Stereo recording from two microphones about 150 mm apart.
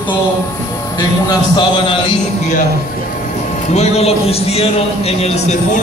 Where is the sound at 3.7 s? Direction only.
45° left (ahead or behind).